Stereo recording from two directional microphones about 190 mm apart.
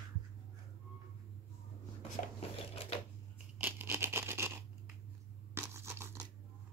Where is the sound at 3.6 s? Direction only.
10° right (ahead or behind).